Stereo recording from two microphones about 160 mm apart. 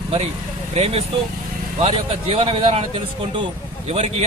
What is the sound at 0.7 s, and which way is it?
Speech, 40° right (ahead or behind).